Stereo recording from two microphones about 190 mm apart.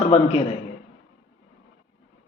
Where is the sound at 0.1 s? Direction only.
30° left (ahead or behind).